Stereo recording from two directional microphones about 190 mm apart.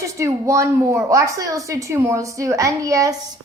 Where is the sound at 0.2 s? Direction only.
15° right (ahead or behind).